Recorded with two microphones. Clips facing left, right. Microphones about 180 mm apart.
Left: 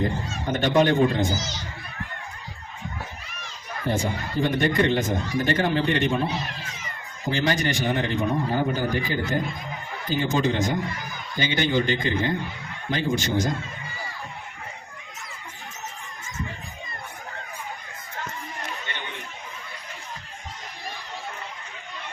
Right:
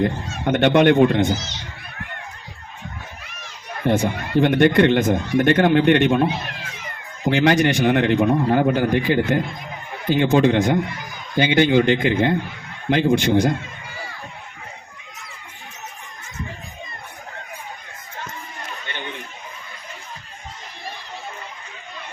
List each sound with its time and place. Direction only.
0.4 s a man's voice: 65° right (ahead or behind)
3.8 s a man's voice: 70° right (ahead or behind)